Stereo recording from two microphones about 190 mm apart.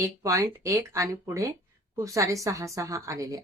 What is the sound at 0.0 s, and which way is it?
A woman's voice, 15° right (ahead or behind).